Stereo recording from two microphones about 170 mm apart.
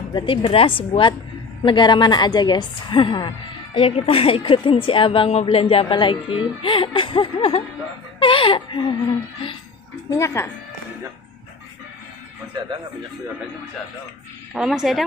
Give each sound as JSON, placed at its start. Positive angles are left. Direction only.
{"t": 0.1, "sound": "a woman's voice", "side_deg": 30}
{"t": 10.0, "sound": "speech", "side_deg": 15}
{"t": 14.5, "sound": "a woman's voice", "side_deg": -5}